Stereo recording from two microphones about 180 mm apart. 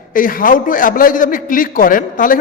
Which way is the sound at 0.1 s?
50° left (ahead or behind).